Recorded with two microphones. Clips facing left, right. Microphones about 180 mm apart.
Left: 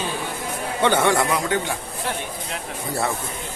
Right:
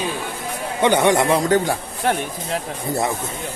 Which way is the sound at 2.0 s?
60° right (ahead or behind).